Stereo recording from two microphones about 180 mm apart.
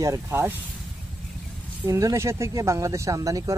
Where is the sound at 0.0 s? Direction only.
15° right (ahead or behind).